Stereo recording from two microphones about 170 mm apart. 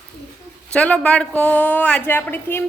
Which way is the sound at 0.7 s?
5° left (ahead or behind).